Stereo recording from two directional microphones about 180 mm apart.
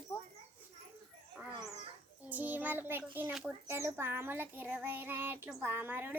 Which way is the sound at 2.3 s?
10° right (ahead or behind).